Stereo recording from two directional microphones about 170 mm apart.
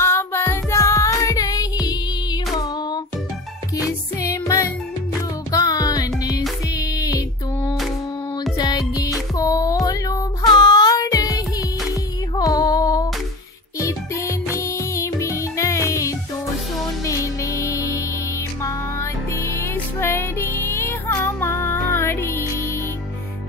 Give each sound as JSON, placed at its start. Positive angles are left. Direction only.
{"t": 0.0, "sound": "music", "side_deg": 15}
{"t": 4.2, "sound": "music", "side_deg": 20}
{"t": 6.7, "sound": "a sound", "side_deg": 20}
{"t": 8.5, "sound": "music", "side_deg": 20}
{"t": 12.4, "sound": "female singing", "side_deg": 20}
{"t": 13.7, "sound": "music", "side_deg": 15}